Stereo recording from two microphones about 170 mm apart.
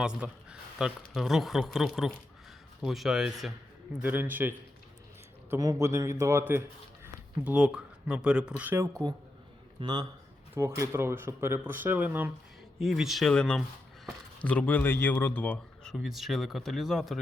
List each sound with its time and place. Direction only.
0.0 s a man's voice: 5° right (ahead or behind)
9.8 s speech: 25° right (ahead or behind)
10.5 s speech: 15° right (ahead or behind)